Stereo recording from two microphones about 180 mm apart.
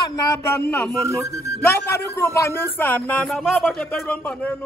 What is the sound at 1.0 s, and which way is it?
Speech, 15° right (ahead or behind).